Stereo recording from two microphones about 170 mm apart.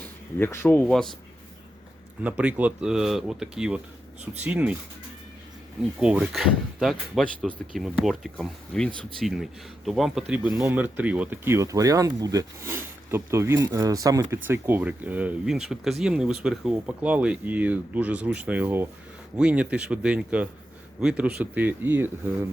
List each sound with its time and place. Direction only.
0.0 s speech: 15° left (ahead or behind)
2.2 s speech: 5° right (ahead or behind)
6.0 s speech: 5° right (ahead or behind)
8.9 s speech: 30° right (ahead or behind)
9.2 s speech: centre (ahead or behind)